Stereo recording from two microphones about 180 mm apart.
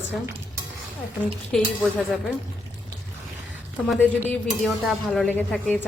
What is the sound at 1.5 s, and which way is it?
Speech, centre (ahead or behind).